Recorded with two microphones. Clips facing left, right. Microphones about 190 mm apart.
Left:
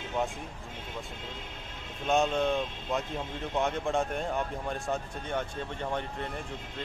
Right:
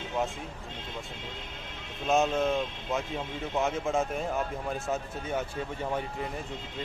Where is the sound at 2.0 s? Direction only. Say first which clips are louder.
Right 1 dB; centre (ahead or behind).